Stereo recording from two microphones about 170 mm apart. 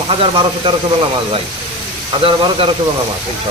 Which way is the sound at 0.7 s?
30° right (ahead or behind).